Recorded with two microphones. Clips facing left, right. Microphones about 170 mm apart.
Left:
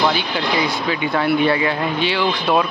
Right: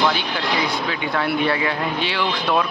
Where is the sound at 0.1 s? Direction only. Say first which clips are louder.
Left 3 dB; centre (ahead or behind).